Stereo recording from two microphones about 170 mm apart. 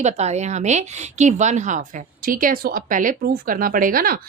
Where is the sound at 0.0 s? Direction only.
40° right (ahead or behind).